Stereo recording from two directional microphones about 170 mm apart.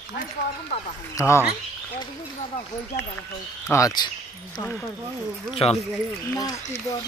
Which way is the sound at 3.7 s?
20° left (ahead or behind).